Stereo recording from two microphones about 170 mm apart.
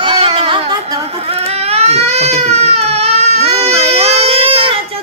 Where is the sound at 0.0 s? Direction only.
35° right (ahead or behind).